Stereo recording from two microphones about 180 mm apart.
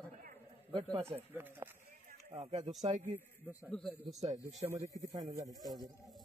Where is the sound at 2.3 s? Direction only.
30° right (ahead or behind).